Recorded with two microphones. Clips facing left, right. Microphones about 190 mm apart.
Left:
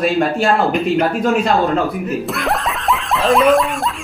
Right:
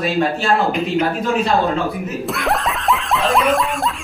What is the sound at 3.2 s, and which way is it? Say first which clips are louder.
Snicker: left 6 dB; centre (ahead or behind).